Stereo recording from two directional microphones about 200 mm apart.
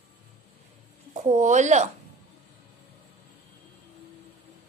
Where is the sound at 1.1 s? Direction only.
35° right (ahead or behind).